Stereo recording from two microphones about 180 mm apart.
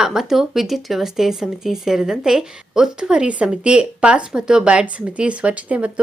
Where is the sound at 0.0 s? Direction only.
Centre (ahead or behind).